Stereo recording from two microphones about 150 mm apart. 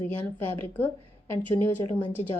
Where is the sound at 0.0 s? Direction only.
15° left (ahead or behind).